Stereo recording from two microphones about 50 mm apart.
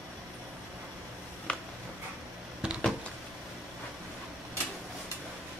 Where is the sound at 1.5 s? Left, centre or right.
Left.